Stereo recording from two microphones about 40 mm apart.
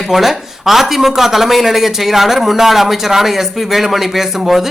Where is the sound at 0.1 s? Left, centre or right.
Centre.